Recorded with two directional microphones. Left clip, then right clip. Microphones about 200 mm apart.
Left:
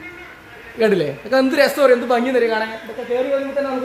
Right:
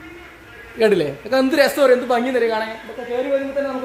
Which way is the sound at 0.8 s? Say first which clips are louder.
Even; 20° right (ahead or behind).